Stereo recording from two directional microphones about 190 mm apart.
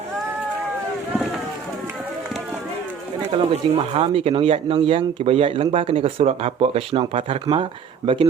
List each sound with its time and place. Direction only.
3.3 s speech: 30° right (ahead or behind)